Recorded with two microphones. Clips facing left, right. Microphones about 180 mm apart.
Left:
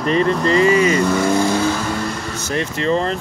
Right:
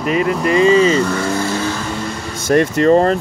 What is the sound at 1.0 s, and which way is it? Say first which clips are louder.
Speech: left 2 dB; 10° left (ahead or behind).